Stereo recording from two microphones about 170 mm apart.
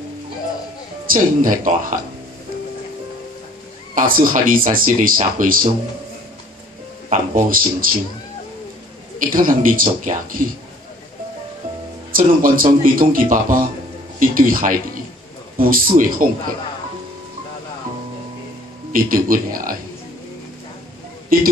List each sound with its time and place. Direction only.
1.0 s a man's voice: 55° right (ahead or behind)
3.9 s speech: 55° right (ahead or behind)
7.1 s speech: 55° right (ahead or behind)
9.2 s a man's voice: 55° right (ahead or behind)
12.1 s a man's voice: 55° right (ahead or behind)
18.9 s speech: 55° right (ahead or behind)
21.3 s speech: 55° right (ahead or behind)